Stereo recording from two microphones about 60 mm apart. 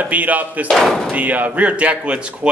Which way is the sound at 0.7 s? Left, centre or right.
Centre.